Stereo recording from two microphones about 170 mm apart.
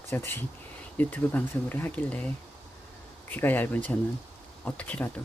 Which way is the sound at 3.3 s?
10° left (ahead or behind).